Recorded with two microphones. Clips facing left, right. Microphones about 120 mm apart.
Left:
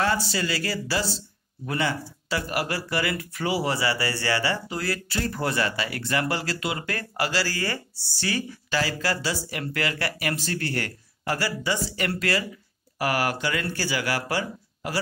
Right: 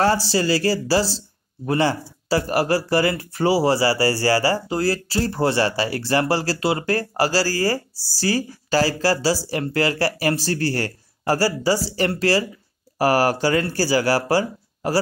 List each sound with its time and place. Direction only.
0.0 s speech: 35° right (ahead or behind)